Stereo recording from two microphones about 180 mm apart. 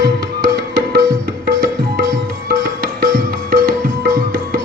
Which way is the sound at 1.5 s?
55° right (ahead or behind).